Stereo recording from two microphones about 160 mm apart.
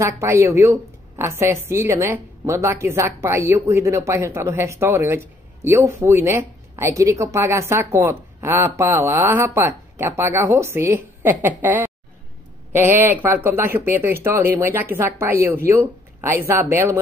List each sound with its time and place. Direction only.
0.0 s a woman's voice: 15° right (ahead or behind)